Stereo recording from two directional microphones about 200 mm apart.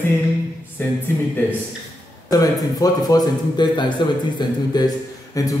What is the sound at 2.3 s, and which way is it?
A man's voice, 20° left (ahead or behind).